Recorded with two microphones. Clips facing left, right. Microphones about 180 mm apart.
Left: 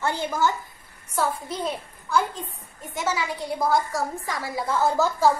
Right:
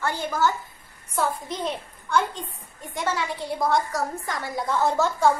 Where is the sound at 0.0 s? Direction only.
15° left (ahead or behind).